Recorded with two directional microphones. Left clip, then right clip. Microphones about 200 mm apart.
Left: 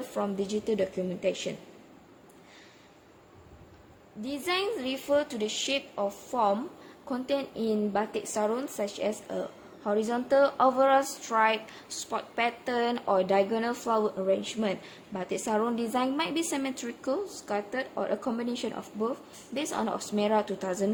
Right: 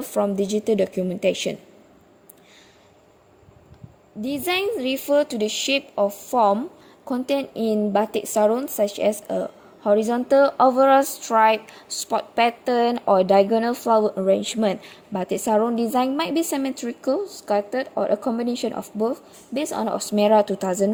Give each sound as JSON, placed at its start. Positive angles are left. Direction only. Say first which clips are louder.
{"t": 0.1, "sound": "a woman's voice", "louder": "right 10 dB", "side_deg": -35}
{"t": 4.2, "sound": "a woman's voice", "louder": "right 7 dB", "side_deg": -40}